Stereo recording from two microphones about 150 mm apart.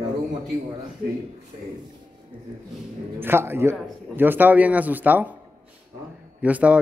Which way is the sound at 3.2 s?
15° right (ahead or behind).